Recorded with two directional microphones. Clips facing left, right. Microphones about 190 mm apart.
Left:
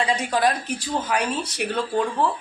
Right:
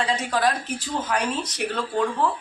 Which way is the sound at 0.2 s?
15° left (ahead or behind).